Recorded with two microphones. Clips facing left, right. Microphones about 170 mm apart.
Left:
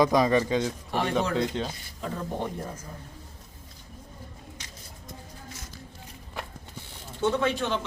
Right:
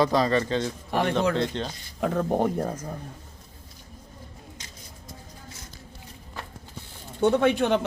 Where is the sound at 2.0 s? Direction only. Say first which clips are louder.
Right 8 dB; 65° right (ahead or behind).